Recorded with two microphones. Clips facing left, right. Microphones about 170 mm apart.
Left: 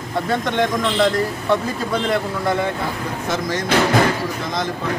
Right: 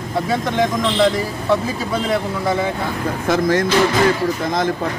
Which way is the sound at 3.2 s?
55° right (ahead or behind).